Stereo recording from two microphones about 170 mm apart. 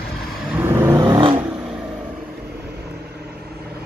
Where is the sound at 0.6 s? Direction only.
15° right (ahead or behind).